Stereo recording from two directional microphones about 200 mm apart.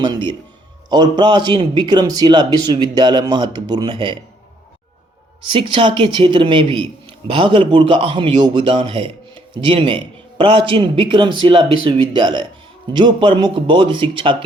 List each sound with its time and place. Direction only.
0.9 s a man's voice: 20° right (ahead or behind)
5.5 s a man's voice: 25° right (ahead or behind)